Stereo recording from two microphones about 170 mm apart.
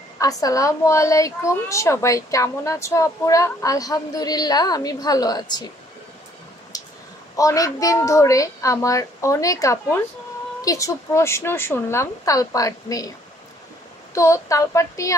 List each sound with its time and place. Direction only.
0.2 s a woman's voice: 20° left (ahead or behind)
6.7 s a sound: 20° left (ahead or behind)
7.3 s a woman's voice: 20° left (ahead or behind)
14.1 s speech: 15° left (ahead or behind)